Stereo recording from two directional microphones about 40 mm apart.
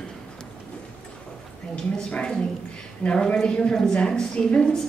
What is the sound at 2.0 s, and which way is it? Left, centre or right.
A woman's voice, left.